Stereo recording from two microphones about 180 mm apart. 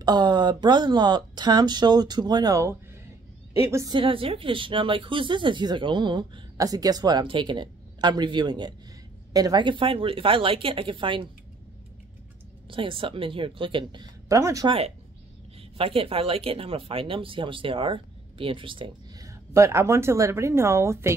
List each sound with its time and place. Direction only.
0.0 s speech: 25° right (ahead or behind)
3.7 s speech: 25° right (ahead or behind)
12.6 s speech: 30° right (ahead or behind)
14.3 s speech: 20° right (ahead or behind)
15.8 s speech: 30° right (ahead or behind); by 21.1 s 15° right (ahead or behind)